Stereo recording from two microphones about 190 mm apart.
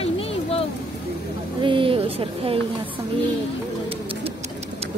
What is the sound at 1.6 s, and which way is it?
Speech, 25° right (ahead or behind).